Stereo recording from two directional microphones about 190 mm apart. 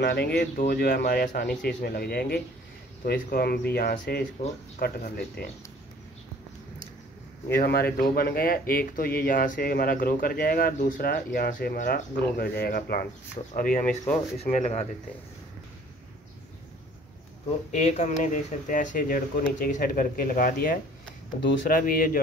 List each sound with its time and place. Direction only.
0.0 s speech: 55° left (ahead or behind)
7.5 s speech: 55° left (ahead or behind)
13.4 s speech: 30° left (ahead or behind)
13.7 s speech: 40° left (ahead or behind)
17.6 s speech: 35° left (ahead or behind)